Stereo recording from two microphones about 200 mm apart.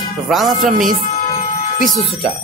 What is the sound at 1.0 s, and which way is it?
Music, 45° left (ahead or behind).